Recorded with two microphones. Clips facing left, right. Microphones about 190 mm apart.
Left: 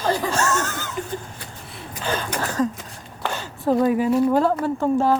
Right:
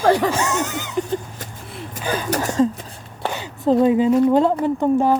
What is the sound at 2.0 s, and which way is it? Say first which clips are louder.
Speech: right 2 dB; 10° right (ahead or behind).